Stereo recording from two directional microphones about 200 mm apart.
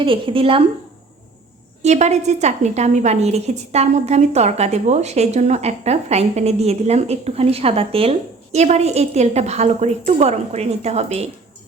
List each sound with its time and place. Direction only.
0.0 s a woman's voice: 25° right (ahead or behind)
1.8 s a woman's voice: 35° right (ahead or behind)